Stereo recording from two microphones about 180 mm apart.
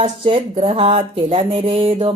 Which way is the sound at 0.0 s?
30° right (ahead or behind).